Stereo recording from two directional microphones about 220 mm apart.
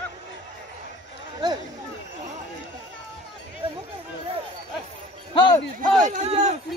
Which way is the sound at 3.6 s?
25° right (ahead or behind).